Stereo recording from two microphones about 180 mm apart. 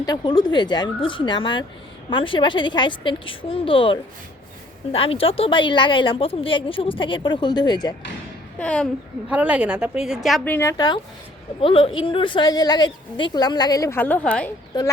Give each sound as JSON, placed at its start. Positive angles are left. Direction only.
{"t": 0.0, "sound": "a woman's voice", "side_deg": 25}
{"t": 8.5, "sound": "a woman's voice", "side_deg": 5}
{"t": 9.3, "sound": "a woman's voice", "side_deg": -5}
{"t": 10.5, "sound": "a woman's voice", "side_deg": 15}